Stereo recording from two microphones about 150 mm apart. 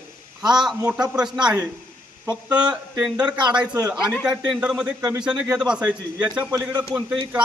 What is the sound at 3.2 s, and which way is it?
A man's voice, 5° right (ahead or behind).